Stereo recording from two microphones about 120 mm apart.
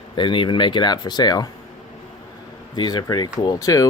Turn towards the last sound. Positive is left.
turn(degrees=30)  # may be behind; listen again after turning